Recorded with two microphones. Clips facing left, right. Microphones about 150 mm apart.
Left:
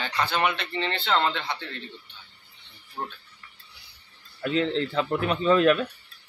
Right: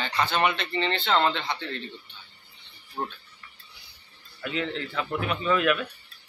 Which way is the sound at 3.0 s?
5° right (ahead or behind).